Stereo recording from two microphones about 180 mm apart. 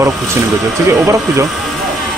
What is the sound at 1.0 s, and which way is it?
Speech, 15° right (ahead or behind).